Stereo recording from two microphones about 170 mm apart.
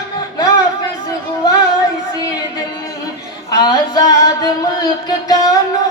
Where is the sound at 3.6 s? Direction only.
25° left (ahead or behind).